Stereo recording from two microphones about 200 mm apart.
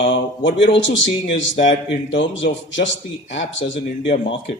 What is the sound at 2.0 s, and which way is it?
Speech, 65° left (ahead or behind).